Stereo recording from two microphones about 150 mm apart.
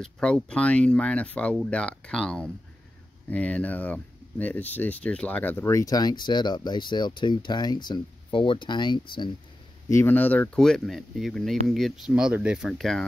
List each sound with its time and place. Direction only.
0.0 s speech: 5° left (ahead or behind); by 9.3 s 30° left (ahead or behind)
9.8 s speech: 15° left (ahead or behind)